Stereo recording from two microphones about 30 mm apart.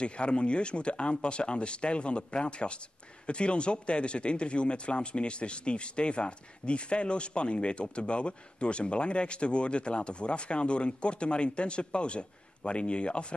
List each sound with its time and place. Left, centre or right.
0.0 s speech: left